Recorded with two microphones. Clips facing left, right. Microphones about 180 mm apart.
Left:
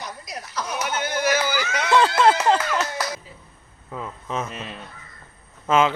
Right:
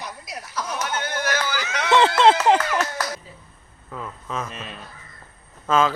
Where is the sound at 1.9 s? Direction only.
25° right (ahead or behind).